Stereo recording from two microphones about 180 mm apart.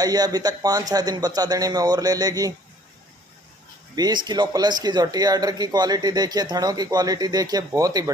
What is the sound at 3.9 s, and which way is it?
A man's voice, 25° right (ahead or behind).